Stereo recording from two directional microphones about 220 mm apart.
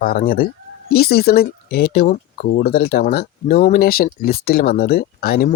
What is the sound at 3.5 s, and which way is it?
Speech, 30° left (ahead or behind).